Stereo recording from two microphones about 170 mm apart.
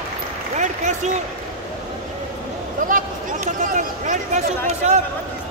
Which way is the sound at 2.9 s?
50° right (ahead or behind).